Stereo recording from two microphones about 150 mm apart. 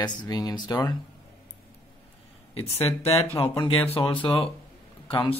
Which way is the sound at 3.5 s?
30° left (ahead or behind).